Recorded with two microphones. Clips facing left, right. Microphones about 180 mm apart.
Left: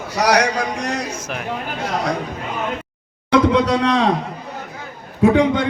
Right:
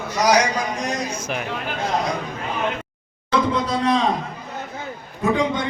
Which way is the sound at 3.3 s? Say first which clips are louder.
Left 6 dB; 75° left (ahead or behind).